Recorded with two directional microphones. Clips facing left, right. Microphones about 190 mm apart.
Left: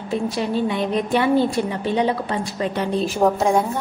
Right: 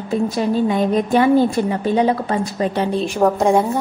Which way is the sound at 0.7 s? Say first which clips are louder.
Right 4 dB; 45° right (ahead or behind).